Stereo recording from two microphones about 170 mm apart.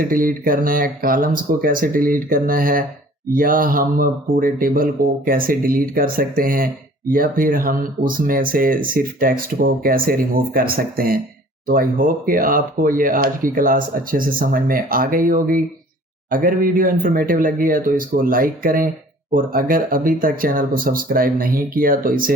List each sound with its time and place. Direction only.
0.1 s speech: 55° right (ahead or behind)